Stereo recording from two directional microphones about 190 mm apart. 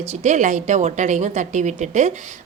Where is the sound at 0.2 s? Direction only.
40° right (ahead or behind).